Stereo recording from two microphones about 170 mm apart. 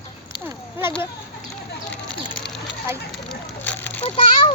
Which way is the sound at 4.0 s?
30° left (ahead or behind).